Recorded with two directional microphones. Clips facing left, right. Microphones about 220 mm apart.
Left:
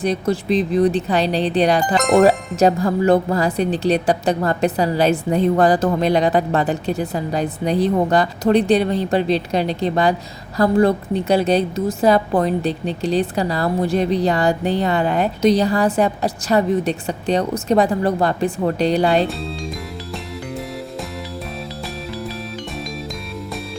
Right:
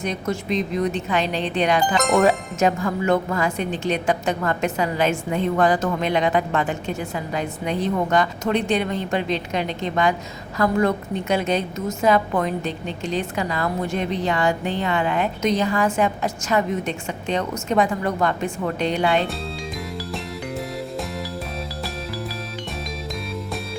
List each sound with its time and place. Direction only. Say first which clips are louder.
0.0 s a woman's voice: left 6 dB; 35° left (ahead or behind)